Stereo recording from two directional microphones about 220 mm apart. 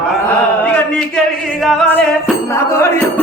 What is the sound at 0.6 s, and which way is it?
Speech, 5° left (ahead or behind).